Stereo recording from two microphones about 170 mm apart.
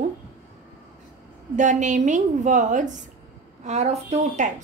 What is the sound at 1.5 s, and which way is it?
A woman's voice, 45° right (ahead or behind).